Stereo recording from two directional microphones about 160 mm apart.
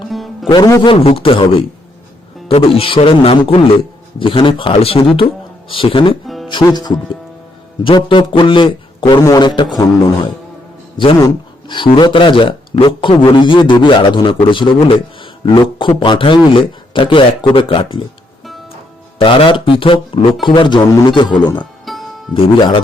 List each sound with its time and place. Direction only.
0.4 s a man's voice: 25° left (ahead or behind)
0.9 s a man's voice: 40° left (ahead or behind)
2.5 s a man's voice: 35° left (ahead or behind)
6.2 s music: centre (ahead or behind)
6.5 s a man's voice: 25° left (ahead or behind)
10.9 s a man's voice: 30° left (ahead or behind)
19.2 s a man's voice: 30° left (ahead or behind)
21.6 s music: centre (ahead or behind)
22.4 s a man's voice: 35° left (ahead or behind)